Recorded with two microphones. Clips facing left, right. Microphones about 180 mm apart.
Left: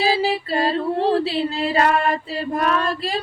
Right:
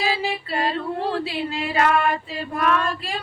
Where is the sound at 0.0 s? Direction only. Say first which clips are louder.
Left 5 dB; 35° left (ahead or behind).